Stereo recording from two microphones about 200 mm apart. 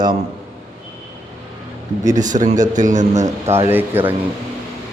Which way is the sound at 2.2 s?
40° right (ahead or behind).